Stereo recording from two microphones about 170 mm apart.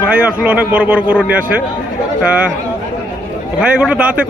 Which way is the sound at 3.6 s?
5° right (ahead or behind).